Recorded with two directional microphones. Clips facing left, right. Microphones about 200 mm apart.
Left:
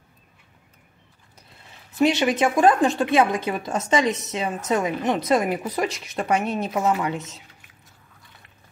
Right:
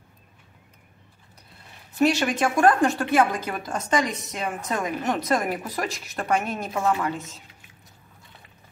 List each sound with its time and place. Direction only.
2.0 s a woman's voice: 20° left (ahead or behind)